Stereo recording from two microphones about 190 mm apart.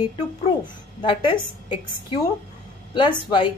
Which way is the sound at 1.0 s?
25° left (ahead or behind).